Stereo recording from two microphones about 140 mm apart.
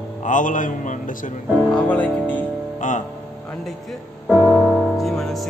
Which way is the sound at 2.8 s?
65° left (ahead or behind).